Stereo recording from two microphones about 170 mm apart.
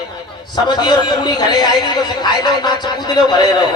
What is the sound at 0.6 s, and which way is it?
Speech, 25° left (ahead or behind).